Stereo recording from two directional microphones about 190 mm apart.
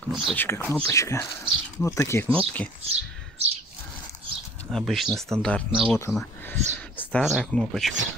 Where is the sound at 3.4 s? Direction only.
30° right (ahead or behind).